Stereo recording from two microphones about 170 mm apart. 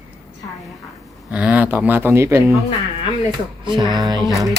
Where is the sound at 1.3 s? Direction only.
10° right (ahead or behind).